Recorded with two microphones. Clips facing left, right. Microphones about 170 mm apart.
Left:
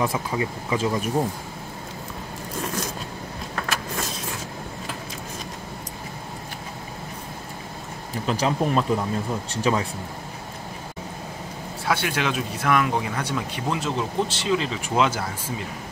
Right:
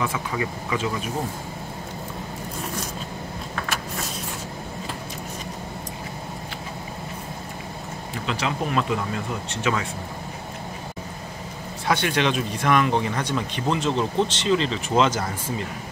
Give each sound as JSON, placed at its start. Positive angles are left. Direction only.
{"t": 0.0, "sound": "speech", "side_deg": 30}
{"t": 8.3, "sound": "speech", "side_deg": 40}
{"t": 11.9, "sound": "speech", "side_deg": 5}